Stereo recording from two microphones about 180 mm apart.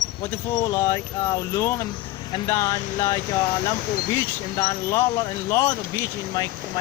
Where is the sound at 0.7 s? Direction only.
15° left (ahead or behind).